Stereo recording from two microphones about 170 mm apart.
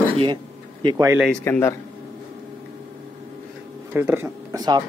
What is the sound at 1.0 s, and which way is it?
Speech, 15° right (ahead or behind).